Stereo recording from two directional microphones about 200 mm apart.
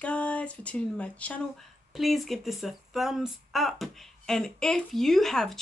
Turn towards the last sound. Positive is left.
turn(degrees=0)  # may be behind; listen again after turning